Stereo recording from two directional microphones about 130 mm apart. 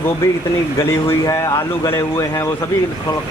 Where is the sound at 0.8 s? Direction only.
20° left (ahead or behind).